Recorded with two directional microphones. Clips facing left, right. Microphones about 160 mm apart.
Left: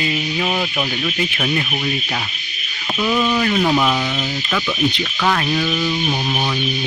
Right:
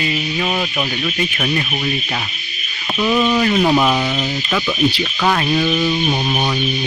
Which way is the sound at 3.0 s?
10° right (ahead or behind).